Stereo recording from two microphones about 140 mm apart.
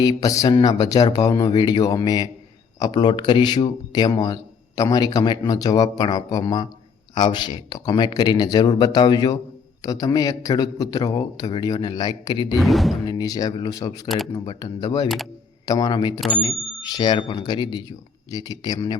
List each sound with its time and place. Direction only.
0.0 s a man's voice: 25° left (ahead or behind)
12.5 s speech: centre (ahead or behind)
13.1 s a man's voice: 30° left (ahead or behind)